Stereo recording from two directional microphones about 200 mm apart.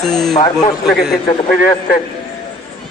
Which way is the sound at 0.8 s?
Centre (ahead or behind).